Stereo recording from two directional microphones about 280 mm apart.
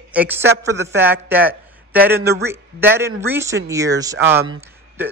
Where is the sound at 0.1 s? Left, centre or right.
Centre.